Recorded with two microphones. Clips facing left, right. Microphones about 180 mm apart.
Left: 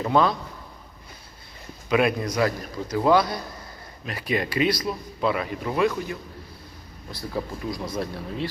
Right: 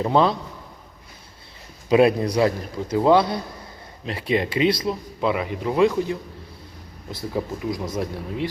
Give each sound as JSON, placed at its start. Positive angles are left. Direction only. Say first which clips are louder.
{"t": 0.0, "sound": "speech", "louder": "right 2 dB", "side_deg": -25}
{"t": 1.9, "sound": "speech", "louder": "right 5 dB", "side_deg": -30}
{"t": 7.3, "sound": "speech", "louder": "right 3 dB", "side_deg": -20}